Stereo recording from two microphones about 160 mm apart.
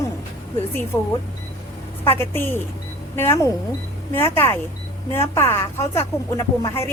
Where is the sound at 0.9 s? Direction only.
15° left (ahead or behind).